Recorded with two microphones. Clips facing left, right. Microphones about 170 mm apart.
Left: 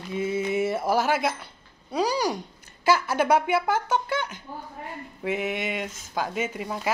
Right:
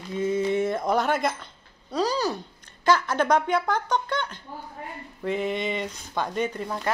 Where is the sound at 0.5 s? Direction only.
5° left (ahead or behind).